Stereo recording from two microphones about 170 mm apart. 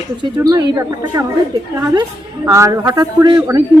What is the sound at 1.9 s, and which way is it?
Speech, 20° right (ahead or behind).